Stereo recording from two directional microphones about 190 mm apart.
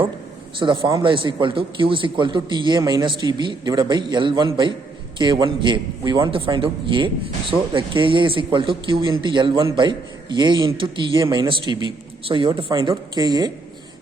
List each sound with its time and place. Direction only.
0.6 s a man's voice: 20° right (ahead or behind)